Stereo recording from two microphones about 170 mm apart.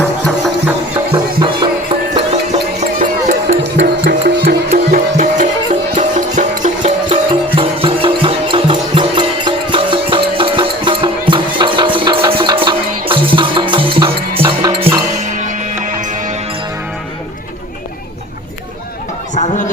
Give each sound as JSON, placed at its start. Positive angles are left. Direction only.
{"t": 0.0, "sound": "music", "side_deg": 5}
{"t": 1.1, "sound": "music", "side_deg": -30}
{"t": 2.6, "sound": "music", "side_deg": -50}
{"t": 3.6, "sound": "music", "side_deg": -90}
{"t": 4.7, "sound": "music", "side_deg": -50}
{"t": 15.2, "sound": "music", "side_deg": -45}
{"t": 19.3, "sound": "chatter", "side_deg": 45}